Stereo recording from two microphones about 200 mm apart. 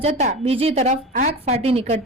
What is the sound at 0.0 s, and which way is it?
A woman's voice, 30° right (ahead or behind).